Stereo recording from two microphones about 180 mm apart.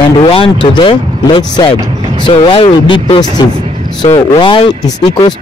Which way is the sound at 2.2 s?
30° left (ahead or behind).